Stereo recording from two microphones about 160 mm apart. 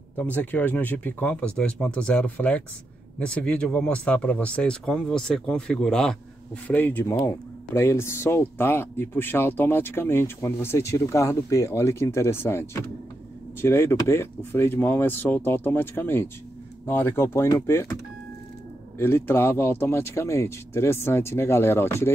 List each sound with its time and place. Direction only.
0.2 s speech: 10° left (ahead or behind)
18.9 s speech: 15° left (ahead or behind)